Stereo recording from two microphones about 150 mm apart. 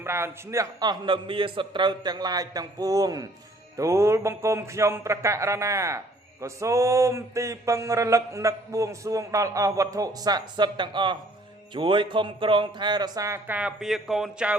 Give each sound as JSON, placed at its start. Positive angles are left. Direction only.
{"t": 0.0, "sound": "mantra", "side_deg": -15}
{"t": 11.7, "sound": "speech", "side_deg": -35}
{"t": 13.6, "sound": "speech", "side_deg": -5}